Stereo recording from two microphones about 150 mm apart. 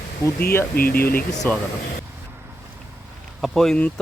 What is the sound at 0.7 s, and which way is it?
Speech, 80° left.